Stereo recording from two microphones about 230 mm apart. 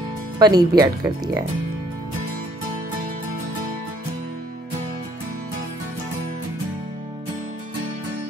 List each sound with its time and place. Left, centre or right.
0.4 s speech: centre